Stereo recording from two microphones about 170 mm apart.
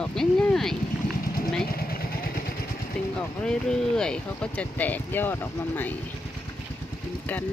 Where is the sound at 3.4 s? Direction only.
5° left (ahead or behind).